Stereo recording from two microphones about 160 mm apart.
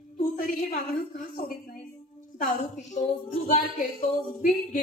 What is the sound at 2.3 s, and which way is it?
A woman's voice, 55° left (ahead or behind).